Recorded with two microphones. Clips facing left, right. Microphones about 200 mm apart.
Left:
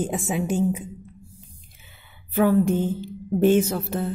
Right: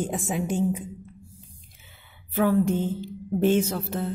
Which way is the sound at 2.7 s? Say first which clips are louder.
Left 3 dB; 55° left (ahead or behind).